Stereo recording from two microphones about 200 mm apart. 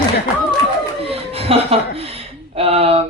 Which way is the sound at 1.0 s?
30° right (ahead or behind).